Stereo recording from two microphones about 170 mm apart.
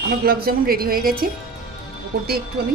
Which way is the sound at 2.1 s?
70° right (ahead or behind).